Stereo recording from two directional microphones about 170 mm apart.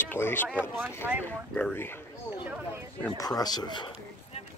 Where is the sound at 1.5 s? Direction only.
10° left (ahead or behind).